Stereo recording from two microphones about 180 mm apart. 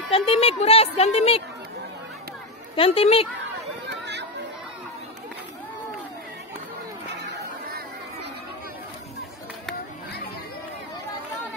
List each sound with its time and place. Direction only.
0.1 s speech: 30° left (ahead or behind)
2.7 s speech: 30° left (ahead or behind)
4.0 s chatter: 75° right (ahead or behind)